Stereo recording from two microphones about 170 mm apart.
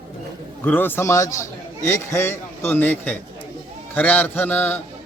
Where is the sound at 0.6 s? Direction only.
10° left (ahead or behind).